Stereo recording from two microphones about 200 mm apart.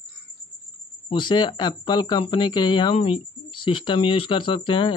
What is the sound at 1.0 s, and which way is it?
Speech, 25° left (ahead or behind).